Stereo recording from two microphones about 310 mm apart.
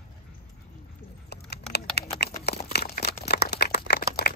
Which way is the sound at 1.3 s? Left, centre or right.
Left.